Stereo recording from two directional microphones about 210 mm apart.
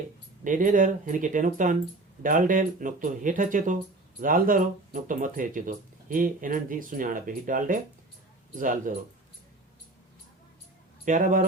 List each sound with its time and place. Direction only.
0.4 s speech: 40° right (ahead or behind)
11.0 s speech: 40° right (ahead or behind)